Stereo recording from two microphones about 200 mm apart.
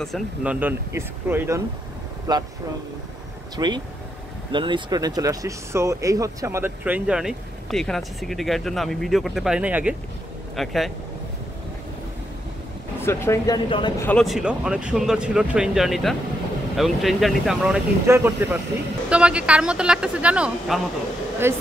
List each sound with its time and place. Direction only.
0.0 s speech: centre (ahead or behind); by 2.4 s 20° right (ahead or behind)
3.5 s speech: 20° right (ahead or behind); by 10.9 s centre (ahead or behind)
13.0 s speech: 15° left (ahead or behind)
13.7 s speech: 25° left (ahead or behind)
14.0 s speech: centre (ahead or behind)